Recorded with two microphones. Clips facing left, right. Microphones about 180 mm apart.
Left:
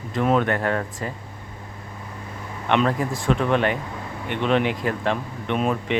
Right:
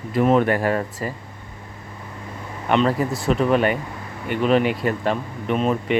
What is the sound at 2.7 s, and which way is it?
A man's voice, 5° right (ahead or behind).